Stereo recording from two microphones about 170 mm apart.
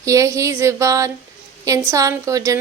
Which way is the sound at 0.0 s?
20° right (ahead or behind).